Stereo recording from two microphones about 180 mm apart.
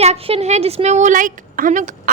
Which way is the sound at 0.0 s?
35° right (ahead or behind).